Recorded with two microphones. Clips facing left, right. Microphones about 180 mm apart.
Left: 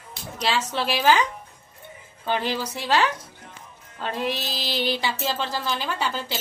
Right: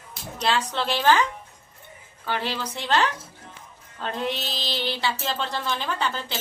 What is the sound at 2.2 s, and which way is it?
Music, 15° left (ahead or behind).